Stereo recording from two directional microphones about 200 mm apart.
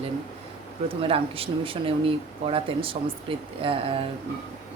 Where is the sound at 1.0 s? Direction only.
30° right (ahead or behind).